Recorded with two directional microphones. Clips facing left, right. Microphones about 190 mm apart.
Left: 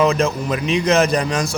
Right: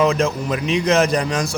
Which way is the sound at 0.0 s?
30° left (ahead or behind).